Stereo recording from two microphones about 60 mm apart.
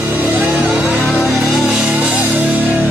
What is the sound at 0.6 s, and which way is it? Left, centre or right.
Music, centre.